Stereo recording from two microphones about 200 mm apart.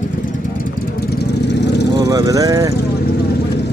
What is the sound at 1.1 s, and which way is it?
Vehicle, 60° left (ahead or behind).